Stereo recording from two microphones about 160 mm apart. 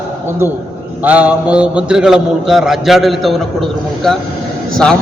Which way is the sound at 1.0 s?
10° right (ahead or behind).